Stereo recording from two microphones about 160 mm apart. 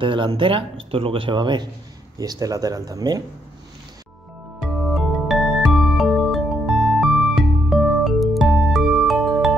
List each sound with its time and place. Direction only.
0.0 s speech: 30° right (ahead or behind)
4.6 s music: centre (ahead or behind)